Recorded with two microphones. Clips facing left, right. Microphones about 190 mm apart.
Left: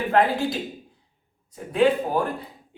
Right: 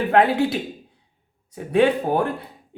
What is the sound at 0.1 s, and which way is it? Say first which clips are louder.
A woman's voice: right 3 dB; 65° right (ahead or behind).